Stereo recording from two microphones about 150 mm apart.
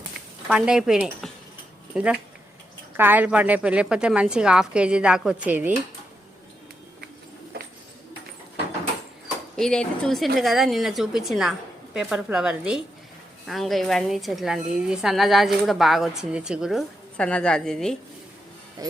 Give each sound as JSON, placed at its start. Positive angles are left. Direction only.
{"t": 0.4, "sound": "a woman's voice", "side_deg": -5}
{"t": 3.0, "sound": "a woman's voice", "side_deg": -10}
{"t": 9.6, "sound": "a woman's voice", "side_deg": 5}
{"t": 17.2, "sound": "a woman's voice", "side_deg": 5}
{"t": 18.8, "sound": "speech", "side_deg": -25}